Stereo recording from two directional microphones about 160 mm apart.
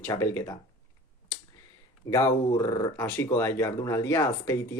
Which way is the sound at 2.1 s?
20° left (ahead or behind).